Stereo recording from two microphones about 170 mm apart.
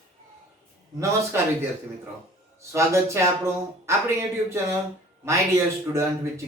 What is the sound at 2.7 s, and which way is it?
A man's voice, 15° right (ahead or behind).